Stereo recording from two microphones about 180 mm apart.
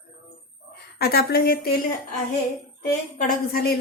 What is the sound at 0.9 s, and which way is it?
Speech, 60° left (ahead or behind).